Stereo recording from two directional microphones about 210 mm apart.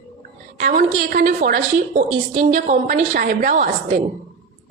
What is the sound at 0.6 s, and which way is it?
A woman's voice, 45° right (ahead or behind).